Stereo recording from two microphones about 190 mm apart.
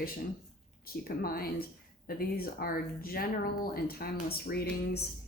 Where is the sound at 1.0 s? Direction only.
50° left (ahead or behind).